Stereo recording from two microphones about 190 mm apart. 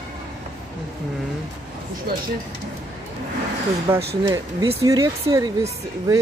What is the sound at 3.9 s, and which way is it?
Speech, 10° right (ahead or behind).